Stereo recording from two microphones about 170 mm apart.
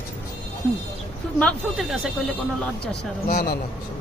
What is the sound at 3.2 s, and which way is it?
Speech, 50° left (ahead or behind).